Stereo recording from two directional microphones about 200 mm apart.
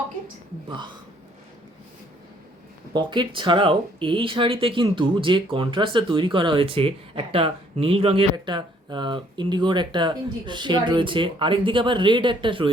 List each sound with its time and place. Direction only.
2.9 s speech: 25° right (ahead or behind)